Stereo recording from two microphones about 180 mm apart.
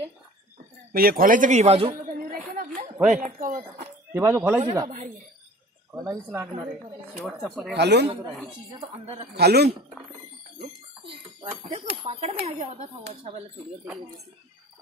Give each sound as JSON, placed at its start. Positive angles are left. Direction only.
{"t": 0.9, "sound": "a man's voice", "side_deg": -55}
{"t": 2.1, "sound": "a sound", "side_deg": -50}
{"t": 3.0, "sound": "speech", "side_deg": -5}
{"t": 3.3, "sound": "a man's voice", "side_deg": -50}
{"t": 4.1, "sound": "speech", "side_deg": -10}
{"t": 4.8, "sound": "a man's voice", "side_deg": -45}
{"t": 7.2, "sound": "speech", "side_deg": 0}
{"t": 7.7, "sound": "speech", "side_deg": -70}
{"t": 9.4, "sound": "speech", "side_deg": -65}
{"t": 11.6, "sound": "speech", "side_deg": -35}